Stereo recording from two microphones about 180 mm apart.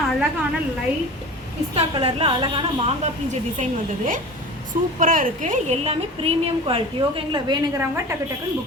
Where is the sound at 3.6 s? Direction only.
45° right (ahead or behind); by 7.6 s 25° right (ahead or behind).